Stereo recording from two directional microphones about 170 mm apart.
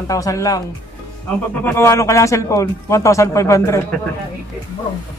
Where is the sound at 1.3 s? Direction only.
10° left (ahead or behind).